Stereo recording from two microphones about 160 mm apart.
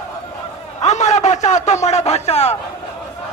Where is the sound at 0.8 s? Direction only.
45° left (ahead or behind).